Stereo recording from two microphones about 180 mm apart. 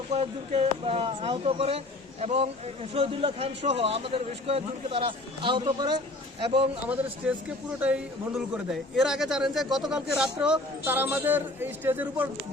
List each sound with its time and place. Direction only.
0.1 s speech: 40° right (ahead or behind)
6.8 s a man's voice: 10° right (ahead or behind)